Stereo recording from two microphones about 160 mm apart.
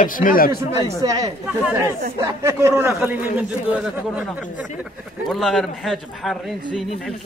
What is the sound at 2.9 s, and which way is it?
A man's voice, 5° right (ahead or behind).